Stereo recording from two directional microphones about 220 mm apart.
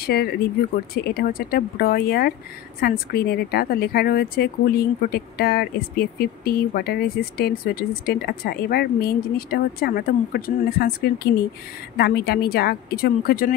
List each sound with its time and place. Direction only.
0.0 s speech: 45° left (ahead or behind)